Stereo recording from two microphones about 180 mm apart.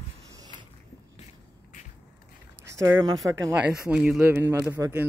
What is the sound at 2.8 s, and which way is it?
Speech, 20° right (ahead or behind).